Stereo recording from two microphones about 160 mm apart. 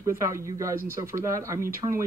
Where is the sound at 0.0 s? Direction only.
20° right (ahead or behind).